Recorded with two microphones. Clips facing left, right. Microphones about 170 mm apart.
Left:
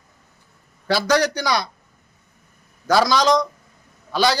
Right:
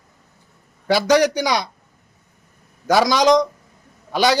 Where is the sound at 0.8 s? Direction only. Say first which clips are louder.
Right 3 dB; 15° right (ahead or behind).